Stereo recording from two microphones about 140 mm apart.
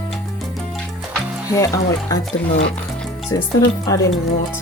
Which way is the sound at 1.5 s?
25° left (ahead or behind).